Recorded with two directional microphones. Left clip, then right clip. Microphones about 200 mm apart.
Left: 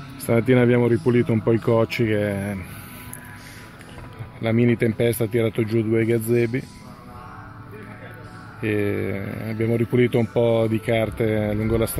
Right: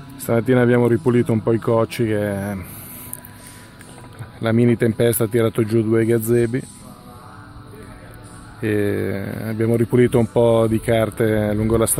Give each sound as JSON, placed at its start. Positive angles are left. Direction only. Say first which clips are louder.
{"t": 0.3, "sound": "speech", "louder": "right 2 dB", "side_deg": 0}
{"t": 4.4, "sound": "speech", "louder": "right 3 dB", "side_deg": -15}
{"t": 8.5, "sound": "speech", "louder": "right 3 dB", "side_deg": -15}